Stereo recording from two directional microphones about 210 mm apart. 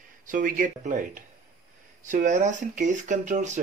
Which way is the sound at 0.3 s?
40° right (ahead or behind).